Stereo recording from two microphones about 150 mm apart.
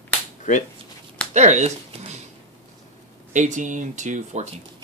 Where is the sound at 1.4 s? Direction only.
50° right (ahead or behind).